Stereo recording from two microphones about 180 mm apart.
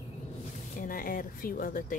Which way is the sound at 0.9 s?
50° left (ahead or behind).